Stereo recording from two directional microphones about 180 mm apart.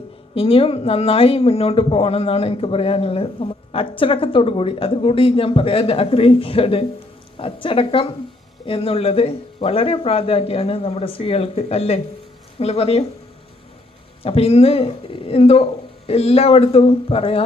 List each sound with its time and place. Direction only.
0.3 s speech: 30° left (ahead or behind)
14.2 s speech: 35° left (ahead or behind)